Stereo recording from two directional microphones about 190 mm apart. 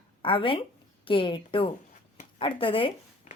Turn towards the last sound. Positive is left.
turn(degrees=30)  # may be behind; listen again after turning